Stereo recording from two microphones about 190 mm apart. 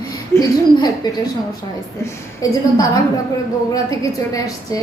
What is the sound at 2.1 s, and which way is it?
A woman's voice, 20° left (ahead or behind).